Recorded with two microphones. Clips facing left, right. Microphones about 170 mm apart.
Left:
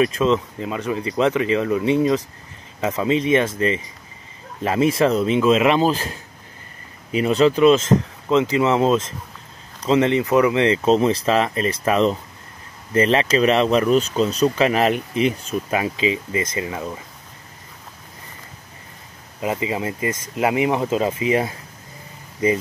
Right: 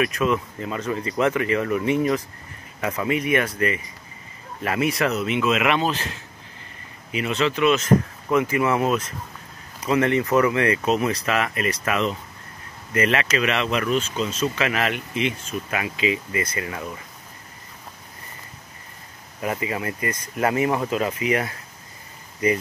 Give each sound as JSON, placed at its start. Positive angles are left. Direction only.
{"t": 0.0, "sound": "speech", "side_deg": 25}
{"t": 7.1, "sound": "speech", "side_deg": 35}
{"t": 8.3, "sound": "speech", "side_deg": 20}
{"t": 19.4, "sound": "speech", "side_deg": 20}